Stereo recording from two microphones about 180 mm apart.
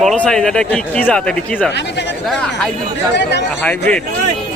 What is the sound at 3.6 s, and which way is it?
Speech, 5° left (ahead or behind).